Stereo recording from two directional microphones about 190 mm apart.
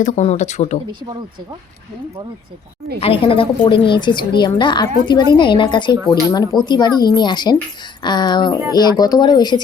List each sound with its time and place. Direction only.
0.0 s speech: 40° left (ahead or behind)
3.0 s speech: 30° left (ahead or behind)